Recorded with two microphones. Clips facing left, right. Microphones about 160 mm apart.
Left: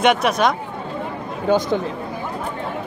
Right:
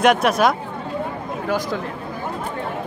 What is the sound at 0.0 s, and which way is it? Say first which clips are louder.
Speech: right 1 dB; centre (ahead or behind).